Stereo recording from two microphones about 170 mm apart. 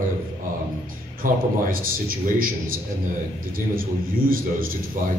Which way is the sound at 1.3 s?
55° right (ahead or behind).